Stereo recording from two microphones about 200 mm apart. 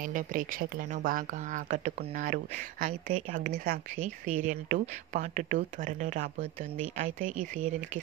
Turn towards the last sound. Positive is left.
turn(degrees=-40)  # may be behind; listen again after turning